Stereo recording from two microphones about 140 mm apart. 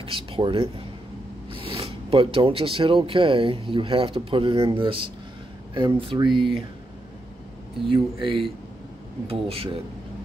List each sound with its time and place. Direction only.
0.0 s a sound: 40° right (ahead or behind)
1.6 s speech: 40° right (ahead or behind)
6.3 s speech: centre (ahead or behind)
7.9 s speech: 40° right (ahead or behind)